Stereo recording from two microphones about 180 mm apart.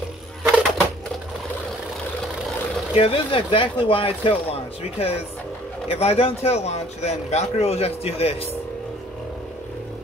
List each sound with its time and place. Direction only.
0.4 s crushing: 5° right (ahead or behind)
3.0 s speech: 30° left (ahead or behind)